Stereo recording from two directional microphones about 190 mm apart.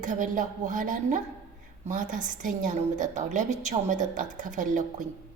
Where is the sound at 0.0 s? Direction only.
45° right (ahead or behind).